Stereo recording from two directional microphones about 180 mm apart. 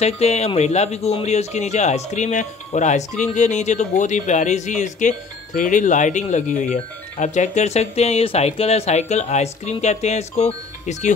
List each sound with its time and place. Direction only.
0.0 s speech: 35° left (ahead or behind)